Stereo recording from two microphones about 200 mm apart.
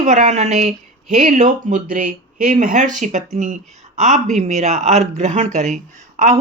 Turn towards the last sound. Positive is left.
turn(degrees=-35)  # may be behind; listen again after turning